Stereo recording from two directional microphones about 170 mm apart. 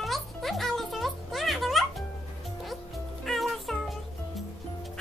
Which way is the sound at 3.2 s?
Centre (ahead or behind).